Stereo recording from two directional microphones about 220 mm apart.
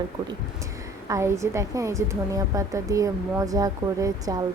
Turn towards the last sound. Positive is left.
turn(degrees=-15)  # may be behind; listen again after turning